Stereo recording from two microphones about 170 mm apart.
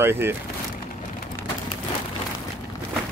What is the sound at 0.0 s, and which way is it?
Speech, 15° right (ahead or behind).